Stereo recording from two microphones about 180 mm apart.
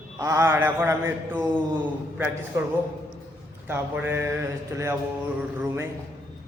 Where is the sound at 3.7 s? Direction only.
10° right (ahead or behind).